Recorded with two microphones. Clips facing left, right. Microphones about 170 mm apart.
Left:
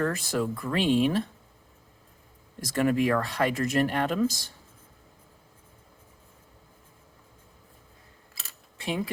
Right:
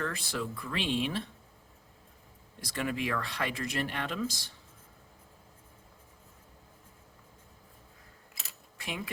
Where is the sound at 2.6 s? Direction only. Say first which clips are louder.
Left 9 dB; 45° left (ahead or behind).